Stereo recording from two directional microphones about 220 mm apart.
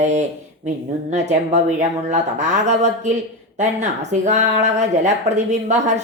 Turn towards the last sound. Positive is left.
turn(degrees=-30)  # may be behind; listen again after turning